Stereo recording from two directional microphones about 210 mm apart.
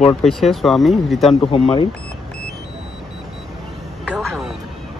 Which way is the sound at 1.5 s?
25° left (ahead or behind).